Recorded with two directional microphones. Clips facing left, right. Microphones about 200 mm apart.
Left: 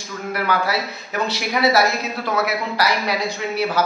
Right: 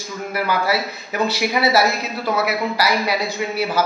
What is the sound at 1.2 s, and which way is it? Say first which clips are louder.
Speech: right 1 dB; 5° right (ahead or behind).